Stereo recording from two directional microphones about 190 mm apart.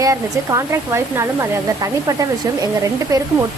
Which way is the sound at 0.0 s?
15° right (ahead or behind).